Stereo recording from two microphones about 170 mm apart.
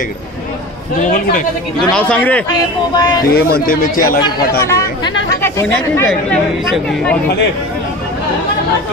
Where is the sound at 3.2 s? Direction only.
65° left (ahead or behind).